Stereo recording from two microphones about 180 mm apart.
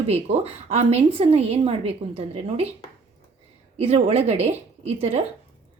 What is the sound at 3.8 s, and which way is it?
A woman's voice, 35° right (ahead or behind).